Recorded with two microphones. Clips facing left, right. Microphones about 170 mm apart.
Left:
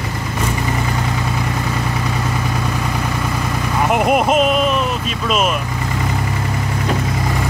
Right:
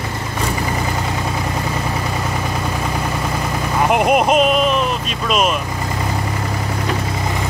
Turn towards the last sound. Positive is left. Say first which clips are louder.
# even
turn(degrees=0)  # may be behind; listen again after turning